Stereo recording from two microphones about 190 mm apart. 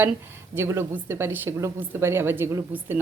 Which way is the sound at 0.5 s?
15° right (ahead or behind).